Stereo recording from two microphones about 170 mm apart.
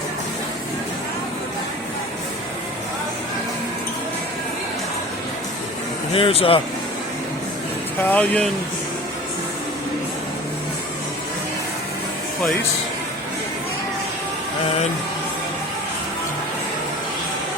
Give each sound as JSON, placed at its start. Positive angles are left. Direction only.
{"t": 6.1, "sound": "speech", "side_deg": 35}
{"t": 8.0, "sound": "speech", "side_deg": 10}